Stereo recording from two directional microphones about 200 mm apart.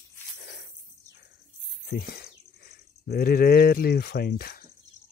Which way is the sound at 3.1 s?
50° left (ahead or behind).